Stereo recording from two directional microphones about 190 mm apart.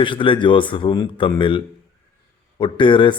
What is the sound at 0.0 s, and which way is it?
Speech, 25° left (ahead or behind).